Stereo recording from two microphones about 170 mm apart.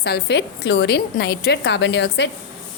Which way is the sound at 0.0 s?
80° left.